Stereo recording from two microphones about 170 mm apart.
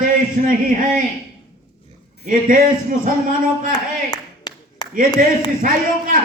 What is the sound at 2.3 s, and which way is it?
A man's voice, 55° right (ahead or behind).